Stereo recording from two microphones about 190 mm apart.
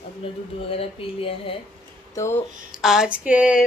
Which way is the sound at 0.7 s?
30° left (ahead or behind).